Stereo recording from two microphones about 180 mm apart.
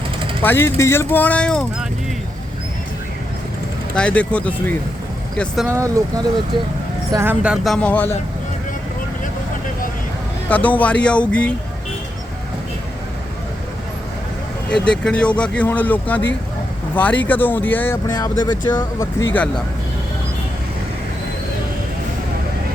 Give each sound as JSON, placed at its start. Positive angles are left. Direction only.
{"t": 0.4, "sound": "speech", "side_deg": 15}
{"t": 3.9, "sound": "speech", "side_deg": 5}
{"t": 5.6, "sound": "speech", "side_deg": -15}
{"t": 7.1, "sound": "speech", "side_deg": -15}
{"t": 10.5, "sound": "speech", "side_deg": 10}
{"t": 14.7, "sound": "speech", "side_deg": 5}